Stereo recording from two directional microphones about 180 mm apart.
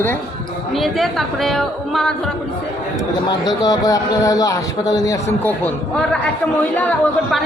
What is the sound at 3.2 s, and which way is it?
Speech, 20° left (ahead or behind).